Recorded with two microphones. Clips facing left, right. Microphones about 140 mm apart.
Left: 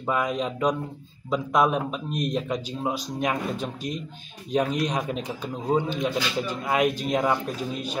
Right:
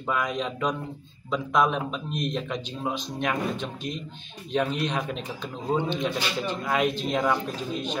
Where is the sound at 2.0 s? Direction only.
40° left (ahead or behind).